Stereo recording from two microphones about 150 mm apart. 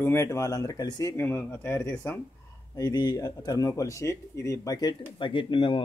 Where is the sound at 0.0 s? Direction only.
20° left (ahead or behind).